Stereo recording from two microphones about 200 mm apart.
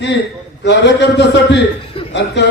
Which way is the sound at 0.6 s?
60° left (ahead or behind).